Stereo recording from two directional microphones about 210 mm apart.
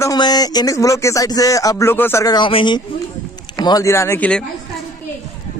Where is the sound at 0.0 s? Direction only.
20° left (ahead or behind).